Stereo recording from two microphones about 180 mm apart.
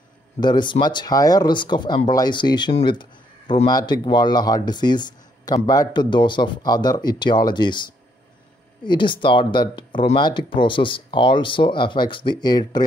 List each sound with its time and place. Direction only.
0.4 s speech: 25° left (ahead or behind)
8.8 s speech: 25° left (ahead or behind)